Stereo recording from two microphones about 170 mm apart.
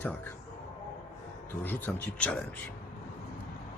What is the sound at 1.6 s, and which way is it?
Speech, 10° left (ahead or behind).